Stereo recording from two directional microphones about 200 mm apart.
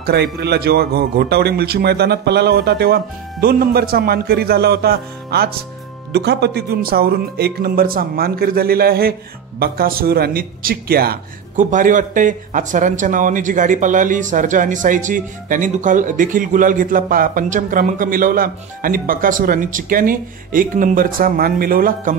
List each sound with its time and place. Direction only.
0.0 s a man's voice: 55° right (ahead or behind)